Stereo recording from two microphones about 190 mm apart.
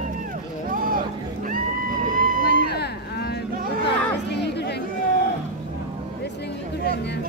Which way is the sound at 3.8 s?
60° left (ahead or behind).